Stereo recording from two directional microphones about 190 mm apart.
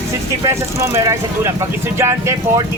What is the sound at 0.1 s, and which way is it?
Speech, 15° right (ahead or behind).